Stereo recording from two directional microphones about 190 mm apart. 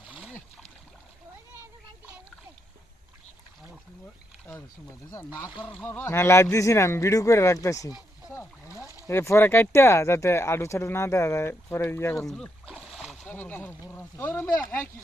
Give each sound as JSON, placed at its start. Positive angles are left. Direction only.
{"t": 0.1, "sound": "boat", "side_deg": 0}
{"t": 5.8, "sound": "speech", "side_deg": 10}
{"t": 8.3, "sound": "boat", "side_deg": 15}
{"t": 9.0, "sound": "speech", "side_deg": 15}
{"t": 12.3, "sound": "speech", "side_deg": 5}